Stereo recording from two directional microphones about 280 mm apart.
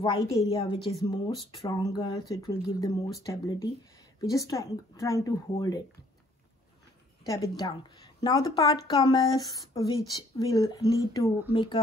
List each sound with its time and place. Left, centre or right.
0.0 s speech: centre
7.2 s speech: centre